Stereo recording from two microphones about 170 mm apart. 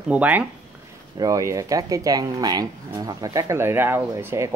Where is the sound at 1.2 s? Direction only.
20° right (ahead or behind).